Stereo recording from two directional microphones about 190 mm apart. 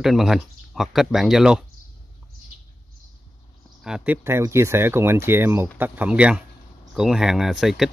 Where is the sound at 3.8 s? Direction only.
5° right (ahead or behind).